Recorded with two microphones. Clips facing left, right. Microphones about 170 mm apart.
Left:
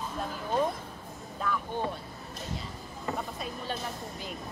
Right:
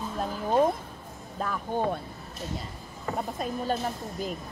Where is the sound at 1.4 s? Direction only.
40° right (ahead or behind).